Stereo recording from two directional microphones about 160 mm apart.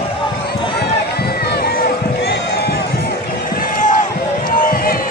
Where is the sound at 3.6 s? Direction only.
55° left (ahead or behind).